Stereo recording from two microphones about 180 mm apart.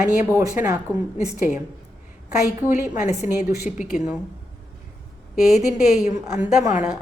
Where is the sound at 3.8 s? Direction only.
45° left (ahead or behind).